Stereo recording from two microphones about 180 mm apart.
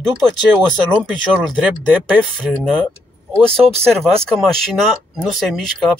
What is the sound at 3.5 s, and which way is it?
Speech, 35° right (ahead or behind).